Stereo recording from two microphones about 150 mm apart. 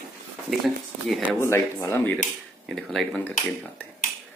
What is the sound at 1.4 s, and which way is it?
Speech, 15° left (ahead or behind).